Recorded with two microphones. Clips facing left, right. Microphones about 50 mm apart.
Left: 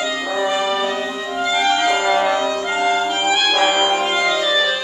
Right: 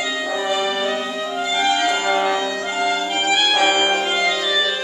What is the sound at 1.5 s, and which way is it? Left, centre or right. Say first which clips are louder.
Music: left 2 dB; centre.